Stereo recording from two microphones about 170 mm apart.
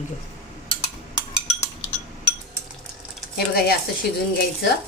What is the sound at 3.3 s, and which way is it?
Speech, 70° left (ahead or behind).